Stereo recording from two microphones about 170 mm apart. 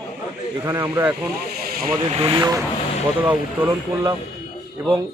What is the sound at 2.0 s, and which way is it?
Speech, 30° right (ahead or behind).